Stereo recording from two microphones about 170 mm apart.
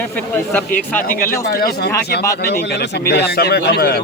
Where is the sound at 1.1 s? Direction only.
15° left (ahead or behind).